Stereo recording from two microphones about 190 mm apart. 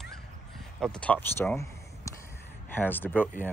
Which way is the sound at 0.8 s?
5° left (ahead or behind).